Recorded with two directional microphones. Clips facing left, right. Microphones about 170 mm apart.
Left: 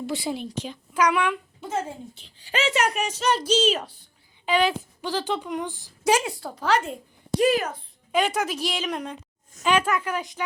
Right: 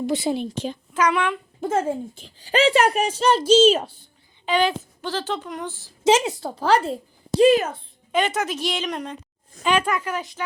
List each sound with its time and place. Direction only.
0.0 s a child's voice: 25° right (ahead or behind)
0.9 s a woman's voice: 10° left (ahead or behind)
1.6 s a woman's voice: 50° right (ahead or behind); by 3.9 s 30° right (ahead or behind)
4.4 s a woman's voice: 5° left (ahead or behind)
6.1 s a child's voice: 25° right (ahead or behind)
8.1 s a woman's voice: 5° left (ahead or behind)